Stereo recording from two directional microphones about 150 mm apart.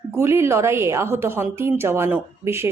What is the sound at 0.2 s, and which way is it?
A woman's voice, 15° right (ahead or behind).